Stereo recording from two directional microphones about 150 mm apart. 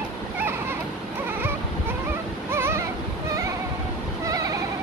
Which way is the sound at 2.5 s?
15° right (ahead or behind).